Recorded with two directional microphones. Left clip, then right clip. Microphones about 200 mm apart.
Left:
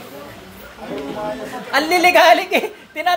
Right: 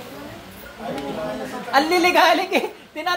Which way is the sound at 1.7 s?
25° left (ahead or behind).